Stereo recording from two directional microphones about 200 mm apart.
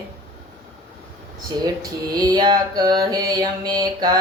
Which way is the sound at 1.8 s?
20° right (ahead or behind).